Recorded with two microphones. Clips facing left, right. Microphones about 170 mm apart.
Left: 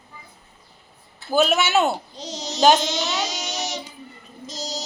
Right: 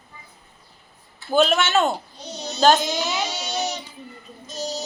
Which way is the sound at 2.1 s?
90° left.